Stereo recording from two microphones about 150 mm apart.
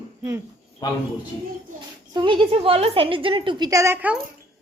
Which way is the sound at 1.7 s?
30° right (ahead or behind).